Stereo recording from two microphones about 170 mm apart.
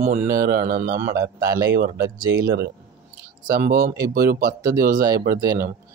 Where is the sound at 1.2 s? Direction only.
20° right (ahead or behind).